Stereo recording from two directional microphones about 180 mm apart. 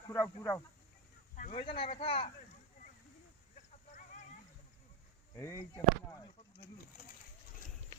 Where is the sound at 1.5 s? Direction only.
30° left (ahead or behind).